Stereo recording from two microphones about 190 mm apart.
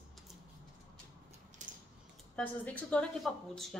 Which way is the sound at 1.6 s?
40° right (ahead or behind).